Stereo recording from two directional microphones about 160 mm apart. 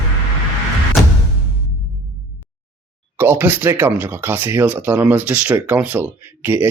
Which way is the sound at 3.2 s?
10° right (ahead or behind).